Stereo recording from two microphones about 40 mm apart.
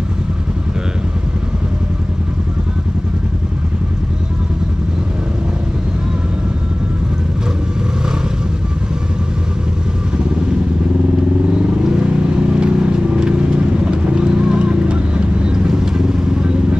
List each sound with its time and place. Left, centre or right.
11.8 s vehicle: right